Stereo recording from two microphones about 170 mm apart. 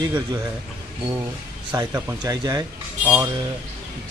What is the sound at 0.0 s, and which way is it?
Speech, 25° right (ahead or behind).